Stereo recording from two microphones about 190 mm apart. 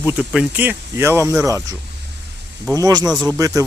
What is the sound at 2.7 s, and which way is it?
Speech, 20° right (ahead or behind).